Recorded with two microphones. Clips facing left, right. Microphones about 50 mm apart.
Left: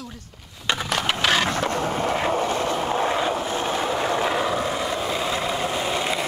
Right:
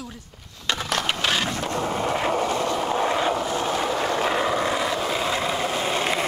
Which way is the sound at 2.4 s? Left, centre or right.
Left.